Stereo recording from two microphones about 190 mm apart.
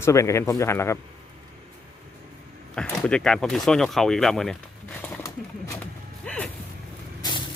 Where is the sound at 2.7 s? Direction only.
5° left (ahead or behind).